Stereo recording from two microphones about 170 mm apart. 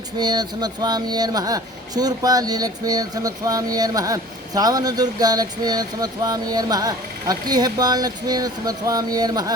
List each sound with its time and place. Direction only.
0.2 s speech: 25° right (ahead or behind)